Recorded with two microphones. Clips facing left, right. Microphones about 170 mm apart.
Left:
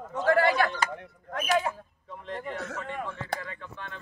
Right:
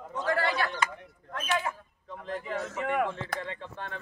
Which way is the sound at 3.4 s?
25° right (ahead or behind).